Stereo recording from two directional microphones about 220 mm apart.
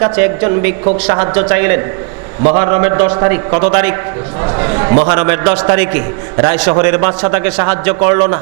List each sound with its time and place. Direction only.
0.0 s a man's voice: 20° right (ahead or behind)
2.4 s a man's voice: 25° right (ahead or behind)
4.4 s a sound: 20° right (ahead or behind)
4.9 s a man's voice: 25° right (ahead or behind)